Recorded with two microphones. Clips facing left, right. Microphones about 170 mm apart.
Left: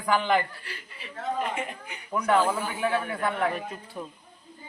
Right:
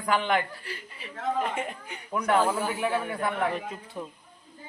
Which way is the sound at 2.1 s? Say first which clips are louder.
Left 1 dB; 5° right (ahead or behind).